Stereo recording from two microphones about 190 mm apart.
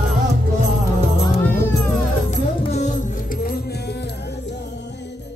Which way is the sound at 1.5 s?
10° left (ahead or behind).